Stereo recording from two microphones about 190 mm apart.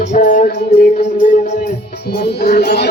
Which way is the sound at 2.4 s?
60° left (ahead or behind).